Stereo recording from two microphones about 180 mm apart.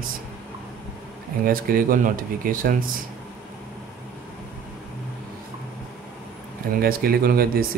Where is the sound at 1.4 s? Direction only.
55° right (ahead or behind).